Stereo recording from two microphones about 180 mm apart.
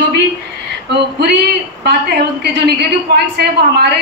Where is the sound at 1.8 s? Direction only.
60° right (ahead or behind).